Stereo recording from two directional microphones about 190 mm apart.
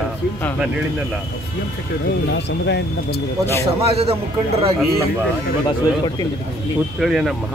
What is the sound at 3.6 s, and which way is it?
Speech, 30° right (ahead or behind).